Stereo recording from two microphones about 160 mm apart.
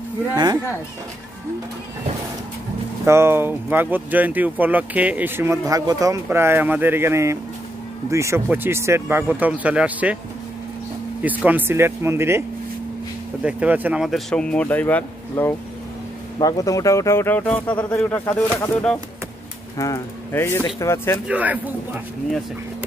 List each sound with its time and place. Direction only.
3.1 s speech: 15° right (ahead or behind)
11.2 s speech: 10° right (ahead or behind); by 15.5 s 10° left (ahead or behind)
16.3 s a man's voice: 25° left (ahead or behind)
21.3 s speech: 10° right (ahead or behind)